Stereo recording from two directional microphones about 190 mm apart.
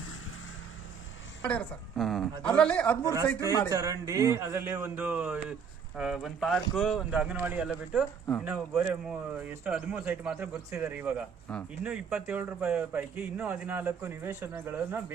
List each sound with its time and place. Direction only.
1.5 s speech: 5° left (ahead or behind)
3.0 s a man's voice: 15° right (ahead or behind)
3.4 s a man's voice: 20° left (ahead or behind)
3.7 s a man's voice: 15° right (ahead or behind)